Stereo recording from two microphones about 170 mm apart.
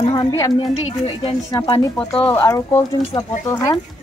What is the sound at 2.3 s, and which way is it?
Speech, 15° left (ahead or behind).